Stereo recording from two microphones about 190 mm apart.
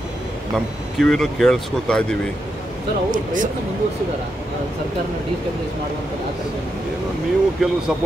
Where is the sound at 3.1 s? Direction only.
45° right (ahead or behind).